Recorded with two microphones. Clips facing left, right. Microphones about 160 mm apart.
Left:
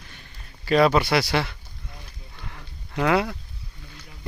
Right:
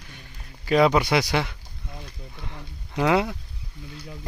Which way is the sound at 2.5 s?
20° right (ahead or behind).